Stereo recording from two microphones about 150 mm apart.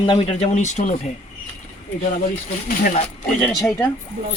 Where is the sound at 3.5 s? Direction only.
Centre (ahead or behind).